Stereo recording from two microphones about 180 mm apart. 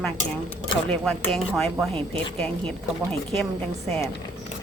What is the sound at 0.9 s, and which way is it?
Speech, 5° left (ahead or behind).